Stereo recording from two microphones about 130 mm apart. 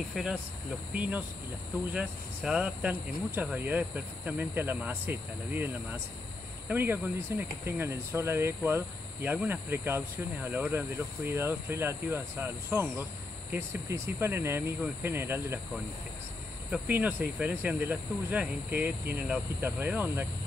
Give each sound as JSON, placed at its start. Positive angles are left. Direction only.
{"t": 0.1, "sound": "speech", "side_deg": -5}
{"t": 16.7, "sound": "speech", "side_deg": -10}